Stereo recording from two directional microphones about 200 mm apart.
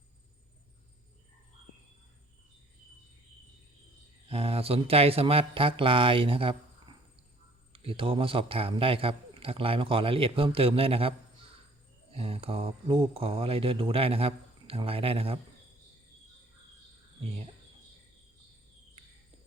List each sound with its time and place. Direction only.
4.3 s a man's voice: 30° right (ahead or behind)
12.1 s a man's voice: 30° right (ahead or behind)